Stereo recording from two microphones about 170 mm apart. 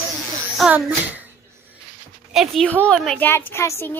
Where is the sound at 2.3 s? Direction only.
Centre (ahead or behind); by 4.0 s 15° left (ahead or behind).